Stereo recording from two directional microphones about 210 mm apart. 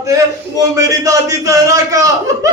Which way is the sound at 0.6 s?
15° right (ahead or behind).